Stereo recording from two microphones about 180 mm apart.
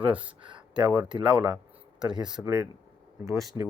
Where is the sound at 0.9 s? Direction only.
5° right (ahead or behind).